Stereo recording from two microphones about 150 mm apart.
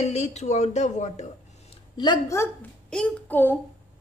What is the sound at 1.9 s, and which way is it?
Speech, 25° left (ahead or behind).